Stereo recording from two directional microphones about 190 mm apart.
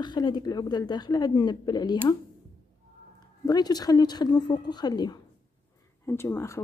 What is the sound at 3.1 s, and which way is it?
A woman's voice, 20° left (ahead or behind).